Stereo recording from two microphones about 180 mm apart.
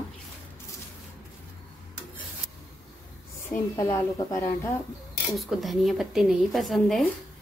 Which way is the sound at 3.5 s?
20° left (ahead or behind).